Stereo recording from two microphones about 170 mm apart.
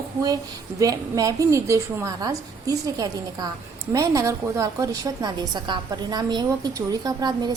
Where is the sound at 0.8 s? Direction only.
20° right (ahead or behind).